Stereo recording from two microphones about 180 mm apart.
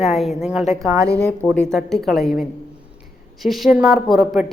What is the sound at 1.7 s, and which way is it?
A man's voice, 5° left (ahead or behind).